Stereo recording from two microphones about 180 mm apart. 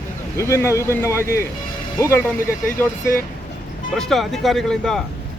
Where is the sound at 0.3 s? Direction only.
15° left (ahead or behind).